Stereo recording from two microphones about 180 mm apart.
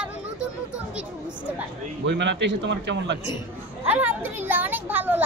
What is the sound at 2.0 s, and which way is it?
A man's voice, 80° right.